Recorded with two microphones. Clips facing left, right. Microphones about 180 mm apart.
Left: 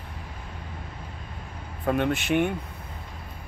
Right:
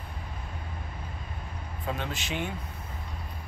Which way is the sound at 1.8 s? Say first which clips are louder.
Left 10 dB; 60° left (ahead or behind).